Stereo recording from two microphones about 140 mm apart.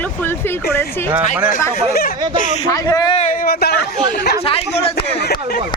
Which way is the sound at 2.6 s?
25° left (ahead or behind).